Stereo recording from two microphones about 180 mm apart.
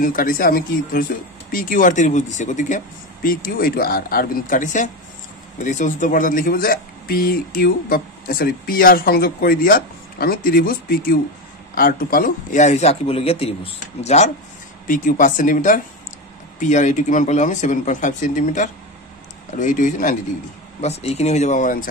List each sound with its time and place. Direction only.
0.0 s a man's voice: 50° left (ahead or behind)